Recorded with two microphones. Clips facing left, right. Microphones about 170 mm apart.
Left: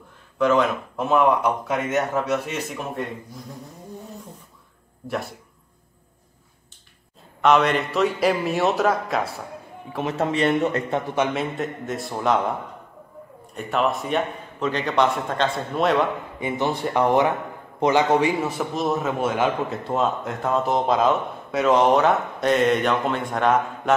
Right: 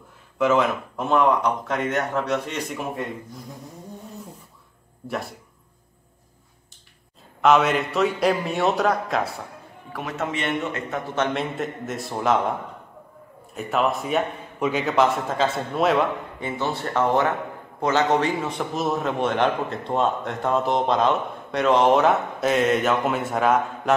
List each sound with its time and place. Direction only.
0.4 s a man's voice: 5° right (ahead or behind)
5.0 s speech: centre (ahead or behind)
7.4 s a man's voice: centre (ahead or behind)
9.9 s a man's voice: 30° left (ahead or behind)
11.3 s a man's voice: centre (ahead or behind)
13.6 s a man's voice: centre (ahead or behind)
16.3 s a man's voice: 15° left (ahead or behind); by 23.6 s 5° right (ahead or behind)